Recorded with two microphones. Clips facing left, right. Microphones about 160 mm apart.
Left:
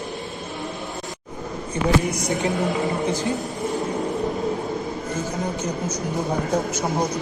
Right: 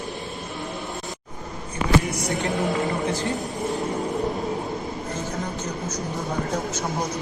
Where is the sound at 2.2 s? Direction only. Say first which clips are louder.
Left 2 dB; 20° left (ahead or behind).